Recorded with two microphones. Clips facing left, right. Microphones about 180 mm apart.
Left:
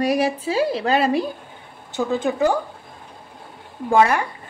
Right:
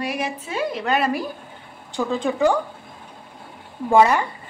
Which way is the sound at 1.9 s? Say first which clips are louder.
Left 1 dB; 5° left (ahead or behind).